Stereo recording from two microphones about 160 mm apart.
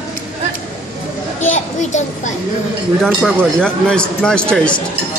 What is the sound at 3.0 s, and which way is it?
A man's voice, 5° left (ahead or behind).